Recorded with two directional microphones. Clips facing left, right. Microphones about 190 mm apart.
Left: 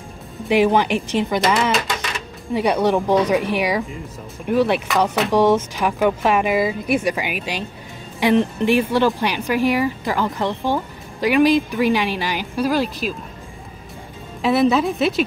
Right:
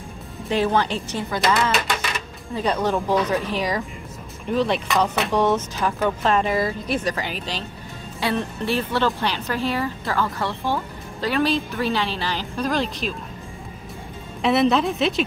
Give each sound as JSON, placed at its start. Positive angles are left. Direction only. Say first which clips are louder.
{"t": 0.5, "sound": "speech", "louder": "left 5 dB", "side_deg": 15}
{"t": 1.7, "sound": "music", "louder": "left 2 dB", "side_deg": 0}
{"t": 2.5, "sound": "speech", "louder": "left 5 dB", "side_deg": 15}
{"t": 14.4, "sound": "a woman's voice", "louder": "left 2 dB", "side_deg": 0}